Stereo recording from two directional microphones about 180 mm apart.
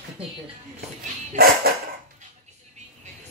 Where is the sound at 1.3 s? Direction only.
55° right (ahead or behind).